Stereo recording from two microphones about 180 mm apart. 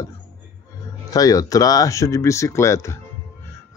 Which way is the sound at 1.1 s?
20° left (ahead or behind).